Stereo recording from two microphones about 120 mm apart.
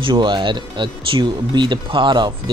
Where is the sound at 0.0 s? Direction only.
40° right (ahead or behind).